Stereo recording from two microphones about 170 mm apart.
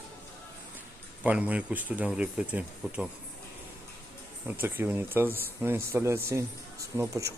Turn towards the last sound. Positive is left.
turn(degrees=-15)  # may be behind; listen again after turning